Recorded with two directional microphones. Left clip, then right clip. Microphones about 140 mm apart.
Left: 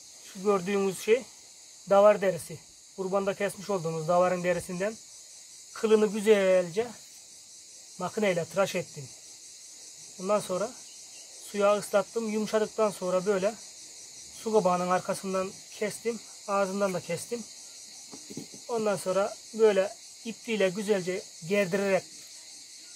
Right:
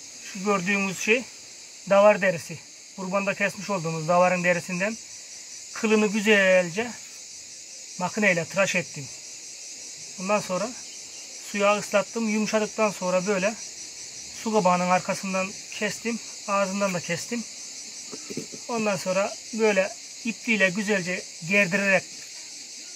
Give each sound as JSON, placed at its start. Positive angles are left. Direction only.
{"t": 0.5, "sound": "speech", "side_deg": 30}
{"t": 8.0, "sound": "speech", "side_deg": 30}
{"t": 10.2, "sound": "speech", "side_deg": 30}
{"t": 18.7, "sound": "speech", "side_deg": 30}